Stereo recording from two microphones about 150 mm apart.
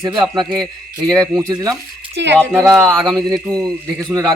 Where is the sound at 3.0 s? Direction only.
25° right (ahead or behind).